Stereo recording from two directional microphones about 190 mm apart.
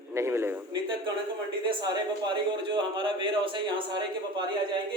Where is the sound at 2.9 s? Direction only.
25° right (ahead or behind).